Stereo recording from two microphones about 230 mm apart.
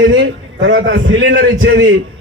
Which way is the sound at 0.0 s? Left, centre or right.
Right.